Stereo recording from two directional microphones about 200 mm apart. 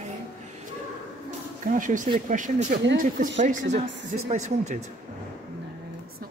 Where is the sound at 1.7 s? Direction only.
40° right (ahead or behind).